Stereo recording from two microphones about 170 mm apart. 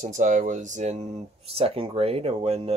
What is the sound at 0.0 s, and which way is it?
Speech, 45° right (ahead or behind).